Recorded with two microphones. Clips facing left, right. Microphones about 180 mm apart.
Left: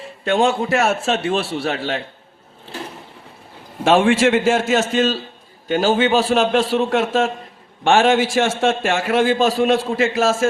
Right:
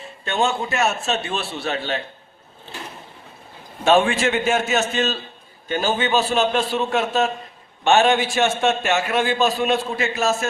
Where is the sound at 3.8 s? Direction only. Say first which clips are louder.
Left 3 dB; 90° left.